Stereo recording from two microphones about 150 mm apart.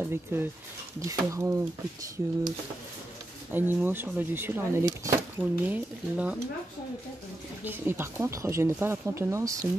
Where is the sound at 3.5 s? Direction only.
15° right (ahead or behind).